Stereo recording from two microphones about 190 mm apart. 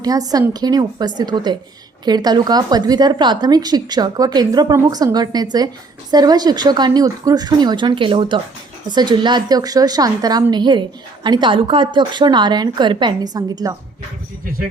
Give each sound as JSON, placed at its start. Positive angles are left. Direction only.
{"t": 0.0, "sound": "a woman's voice", "side_deg": -20}